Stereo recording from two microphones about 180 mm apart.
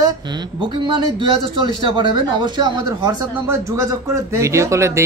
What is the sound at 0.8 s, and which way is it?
Speech, 25° right (ahead or behind).